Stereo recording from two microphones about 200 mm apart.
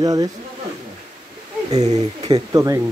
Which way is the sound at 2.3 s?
15° right (ahead or behind).